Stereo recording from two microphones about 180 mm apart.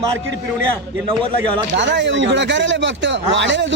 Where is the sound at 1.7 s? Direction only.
85° right.